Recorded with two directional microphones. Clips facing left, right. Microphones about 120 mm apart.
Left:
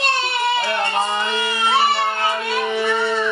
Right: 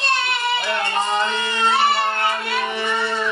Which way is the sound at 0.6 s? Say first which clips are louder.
Left 2 dB; 20° left (ahead or behind).